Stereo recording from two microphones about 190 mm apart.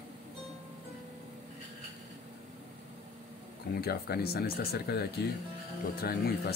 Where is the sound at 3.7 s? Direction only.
55° left (ahead or behind).